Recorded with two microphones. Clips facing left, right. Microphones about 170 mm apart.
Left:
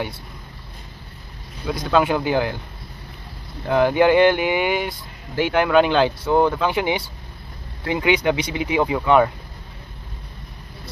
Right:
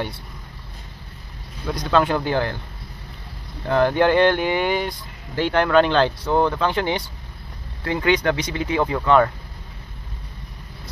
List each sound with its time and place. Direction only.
1.8 s speech: 10° left (ahead or behind)
3.7 s speech: 10° left (ahead or behind)